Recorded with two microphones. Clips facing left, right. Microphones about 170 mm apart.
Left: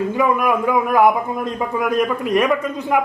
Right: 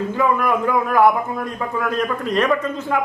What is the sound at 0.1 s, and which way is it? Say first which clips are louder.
A man's voice: right 1 dB; 15° left (ahead or behind).